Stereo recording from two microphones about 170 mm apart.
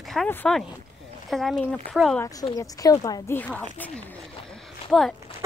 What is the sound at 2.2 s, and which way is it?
A woman's voice, 20° left (ahead or behind).